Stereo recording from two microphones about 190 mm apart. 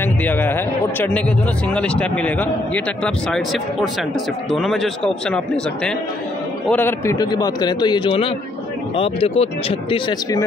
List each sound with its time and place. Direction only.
0.0 s a man's voice: 10° left (ahead or behind)
6.7 s a man's voice: 10° left (ahead or behind); by 10.4 s 25° left (ahead or behind)